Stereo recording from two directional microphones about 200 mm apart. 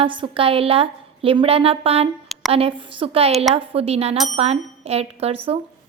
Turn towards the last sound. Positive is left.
turn(degrees=-30)  # may be behind; listen again after turning